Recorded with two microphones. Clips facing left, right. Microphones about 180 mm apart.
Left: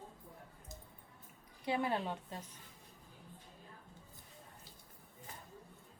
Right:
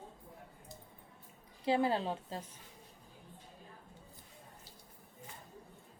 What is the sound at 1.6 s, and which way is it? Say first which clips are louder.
Speech: right 4 dB; 30° right (ahead or behind).